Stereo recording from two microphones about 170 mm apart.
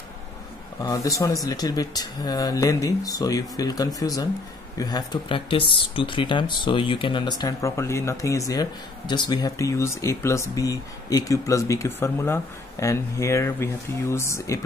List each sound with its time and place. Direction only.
0.8 s speech: 20° left (ahead or behind)